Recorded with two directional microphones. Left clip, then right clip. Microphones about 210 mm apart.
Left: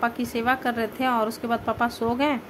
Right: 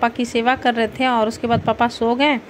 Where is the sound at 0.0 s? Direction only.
10° right (ahead or behind).